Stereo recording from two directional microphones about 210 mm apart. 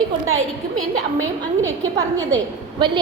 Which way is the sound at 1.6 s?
15° right (ahead or behind).